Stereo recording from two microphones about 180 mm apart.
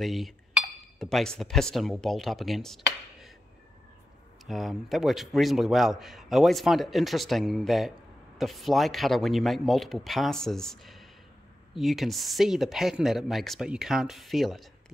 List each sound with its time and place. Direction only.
0.0 s speech: centre (ahead or behind)
4.5 s a man's voice: centre (ahead or behind)